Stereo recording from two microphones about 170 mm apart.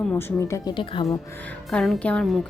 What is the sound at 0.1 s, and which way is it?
Speech, 15° left (ahead or behind).